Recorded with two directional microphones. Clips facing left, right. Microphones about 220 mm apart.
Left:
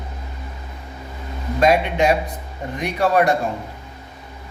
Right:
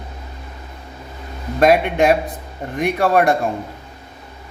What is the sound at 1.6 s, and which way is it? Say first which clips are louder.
A man's voice: right 3 dB; 55° right (ahead or behind).